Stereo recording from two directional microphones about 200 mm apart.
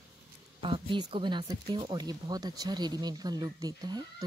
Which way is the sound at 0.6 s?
25° right (ahead or behind).